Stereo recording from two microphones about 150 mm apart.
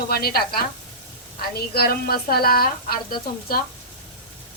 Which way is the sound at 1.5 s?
90° left.